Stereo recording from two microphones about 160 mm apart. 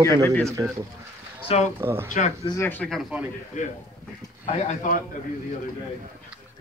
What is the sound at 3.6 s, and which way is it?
Speech, 50° left (ahead or behind).